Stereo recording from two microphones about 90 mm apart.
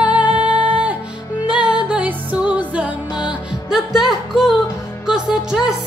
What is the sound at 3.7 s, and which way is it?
Music, 5° right (ahead or behind).